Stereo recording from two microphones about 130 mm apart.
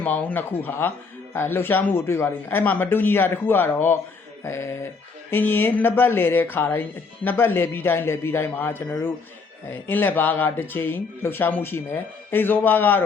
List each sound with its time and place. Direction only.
0.0 s speech: 15° left (ahead or behind)
4.4 s dog: 20° left (ahead or behind)
5.3 s speech: 15° left (ahead or behind)